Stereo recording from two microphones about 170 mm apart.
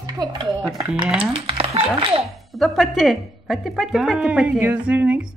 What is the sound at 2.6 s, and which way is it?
A woman's voice, centre (ahead or behind).